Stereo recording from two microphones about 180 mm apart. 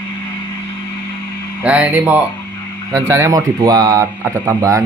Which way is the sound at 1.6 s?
10° right (ahead or behind).